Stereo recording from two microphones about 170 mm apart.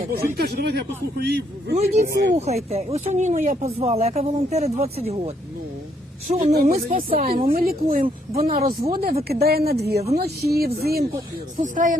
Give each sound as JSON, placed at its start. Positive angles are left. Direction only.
{"t": 0.2, "sound": "a man's voice", "side_deg": -65}
{"t": 2.3, "sound": "speech", "side_deg": -40}
{"t": 6.6, "sound": "a woman's voice", "side_deg": -55}
{"t": 11.5, "sound": "speech", "side_deg": -50}